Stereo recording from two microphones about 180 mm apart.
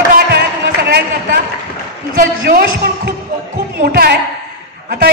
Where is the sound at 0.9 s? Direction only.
60° right (ahead or behind).